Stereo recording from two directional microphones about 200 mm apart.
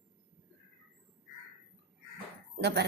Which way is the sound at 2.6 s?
55° right (ahead or behind).